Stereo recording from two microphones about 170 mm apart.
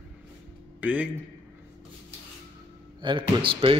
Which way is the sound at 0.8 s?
10° right (ahead or behind).